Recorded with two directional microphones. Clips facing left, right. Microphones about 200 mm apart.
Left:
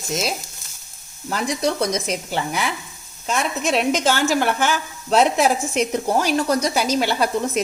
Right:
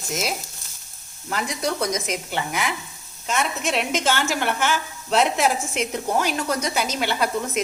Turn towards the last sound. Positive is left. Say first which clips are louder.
# left 3 dB
turn(degrees=35)  # may be behind; listen again after turning